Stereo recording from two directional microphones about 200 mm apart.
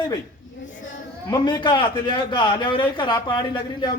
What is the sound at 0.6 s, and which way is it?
Speech, 70° left (ahead or behind).